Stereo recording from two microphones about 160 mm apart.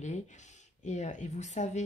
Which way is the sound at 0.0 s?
50° left (ahead or behind).